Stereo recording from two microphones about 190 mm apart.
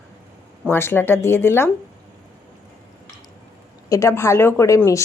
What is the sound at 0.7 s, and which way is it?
Speech, 10° left (ahead or behind).